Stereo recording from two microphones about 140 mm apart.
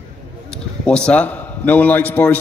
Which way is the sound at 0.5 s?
5° left (ahead or behind).